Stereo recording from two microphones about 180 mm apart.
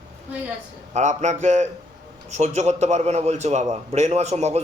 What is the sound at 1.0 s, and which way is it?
A man's voice, 40° right (ahead or behind).